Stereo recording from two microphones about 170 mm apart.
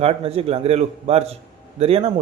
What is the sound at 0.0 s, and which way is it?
A man's voice, 35° right (ahead or behind).